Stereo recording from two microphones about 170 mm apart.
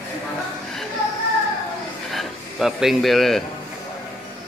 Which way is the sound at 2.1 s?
Centre (ahead or behind).